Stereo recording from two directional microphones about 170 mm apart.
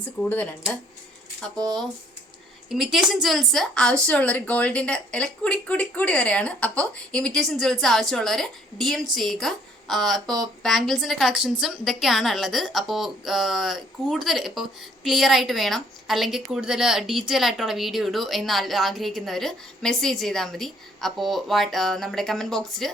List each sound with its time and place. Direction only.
0.0 s speech: 10° left (ahead or behind)
2.6 s a woman's voice: centre (ahead or behind)